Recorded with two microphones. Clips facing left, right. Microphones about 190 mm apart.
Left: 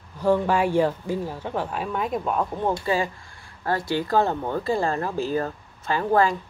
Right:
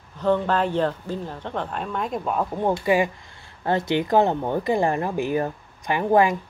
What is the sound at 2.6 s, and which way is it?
A woman's voice, 15° right (ahead or behind).